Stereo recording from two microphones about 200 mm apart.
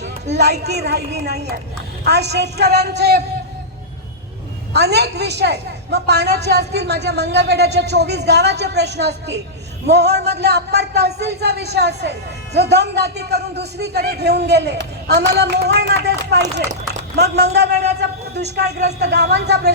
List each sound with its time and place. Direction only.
0.0 s a woman's voice: 55° right (ahead or behind)
4.7 s a woman's voice: 55° right (ahead or behind)